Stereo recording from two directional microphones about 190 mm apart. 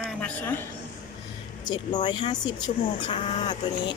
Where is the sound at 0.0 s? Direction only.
5° left (ahead or behind).